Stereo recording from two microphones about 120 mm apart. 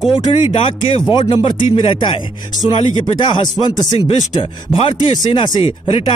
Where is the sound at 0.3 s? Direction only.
45° left (ahead or behind).